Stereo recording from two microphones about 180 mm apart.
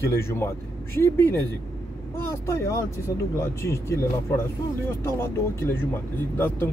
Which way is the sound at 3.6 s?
15° left (ahead or behind).